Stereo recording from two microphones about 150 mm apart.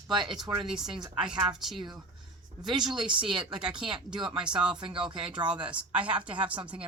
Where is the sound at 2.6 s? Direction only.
30° right (ahead or behind).